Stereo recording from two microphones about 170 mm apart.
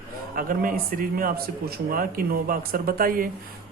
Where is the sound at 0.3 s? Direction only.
55° right (ahead or behind).